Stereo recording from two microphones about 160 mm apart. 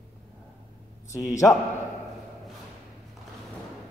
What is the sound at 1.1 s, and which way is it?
Speech, 20° left (ahead or behind).